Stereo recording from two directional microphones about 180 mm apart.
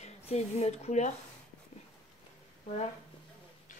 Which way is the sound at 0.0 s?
35° left (ahead or behind).